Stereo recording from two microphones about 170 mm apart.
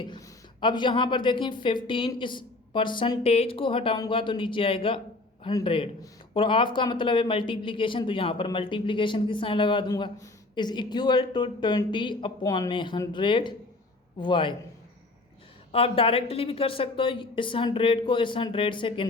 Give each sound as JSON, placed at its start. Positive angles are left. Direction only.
{"t": 0.6, "sound": "speech", "side_deg": 30}
{"t": 15.7, "sound": "a woman's voice", "side_deg": 35}